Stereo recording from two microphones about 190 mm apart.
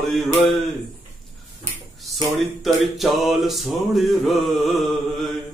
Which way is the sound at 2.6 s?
Centre (ahead or behind).